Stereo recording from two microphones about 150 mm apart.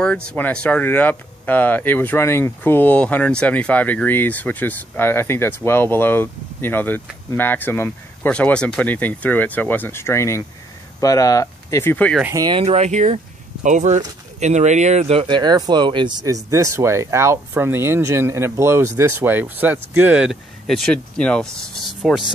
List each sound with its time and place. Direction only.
0.0 s speech: 5° left (ahead or behind)
12.4 s speech: 30° right (ahead or behind)
12.6 s speech: 50° right (ahead or behind); by 22.2 s centre (ahead or behind)